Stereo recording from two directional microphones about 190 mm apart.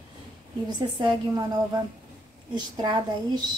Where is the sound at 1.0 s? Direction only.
20° right (ahead or behind).